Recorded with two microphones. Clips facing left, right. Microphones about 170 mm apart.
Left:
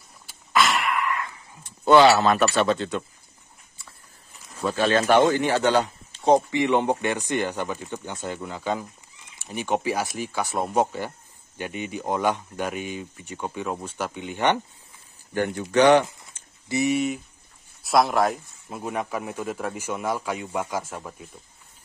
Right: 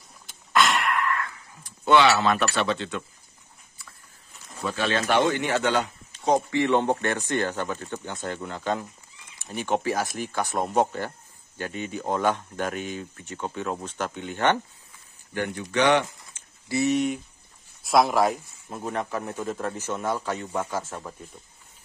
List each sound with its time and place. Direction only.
0.3 s a sound: centre (ahead or behind)
1.0 s a sound: 15° left (ahead or behind)
1.9 s speech: 40° left (ahead or behind)
4.6 s speech: 40° left (ahead or behind)
5.3 s speech: 30° left (ahead or behind)
6.5 s speech: 15° left (ahead or behind)
15.3 s speech: 40° left (ahead or behind)
16.6 s speech: 15° left (ahead or behind)